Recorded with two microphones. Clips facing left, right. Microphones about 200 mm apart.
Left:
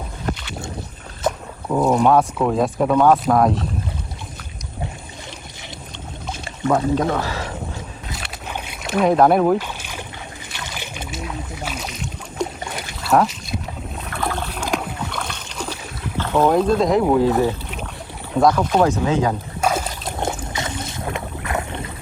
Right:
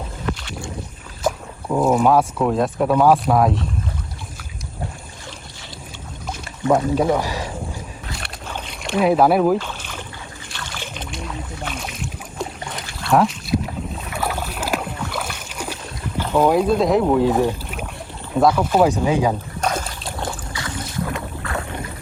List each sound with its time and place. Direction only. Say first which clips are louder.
0.3 s boat: left 1 dB; 40° left (ahead or behind)
1.7 s speech: even; 5° right (ahead or behind)
6.9 s speech: right 2 dB; 10° right (ahead or behind)
8.4 s boat: even; 10° left (ahead or behind)
9.6 s boat: even; 10° left (ahead or behind)
18.3 s speech: even; 5° right (ahead or behind)
20.1 s boat: left 3 dB; 20° left (ahead or behind)